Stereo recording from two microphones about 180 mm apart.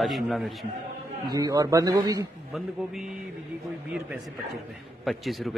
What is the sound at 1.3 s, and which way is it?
Speech, 20° right (ahead or behind).